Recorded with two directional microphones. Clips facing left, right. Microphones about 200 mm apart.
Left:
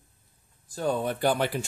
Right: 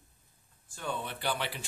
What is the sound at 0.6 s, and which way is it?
Speech, 40° left (ahead or behind).